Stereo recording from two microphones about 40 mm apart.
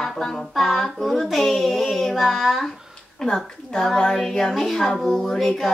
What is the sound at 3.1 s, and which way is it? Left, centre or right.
Speech, centre.